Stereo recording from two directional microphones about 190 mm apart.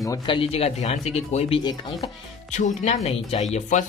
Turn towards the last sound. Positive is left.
turn(degrees=35)  # may be behind; listen again after turning